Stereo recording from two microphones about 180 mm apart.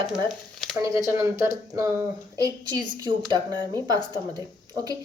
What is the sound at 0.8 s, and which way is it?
Speech, 15° right (ahead or behind).